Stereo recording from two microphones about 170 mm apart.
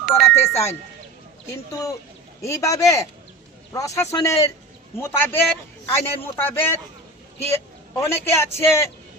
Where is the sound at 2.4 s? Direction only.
20° left (ahead or behind).